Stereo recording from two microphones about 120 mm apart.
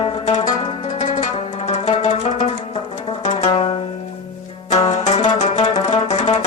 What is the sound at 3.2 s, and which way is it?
Music, 60° left (ahead or behind).